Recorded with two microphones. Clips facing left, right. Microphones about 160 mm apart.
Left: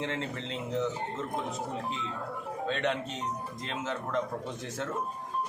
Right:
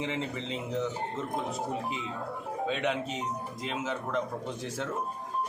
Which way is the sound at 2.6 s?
10° right (ahead or behind).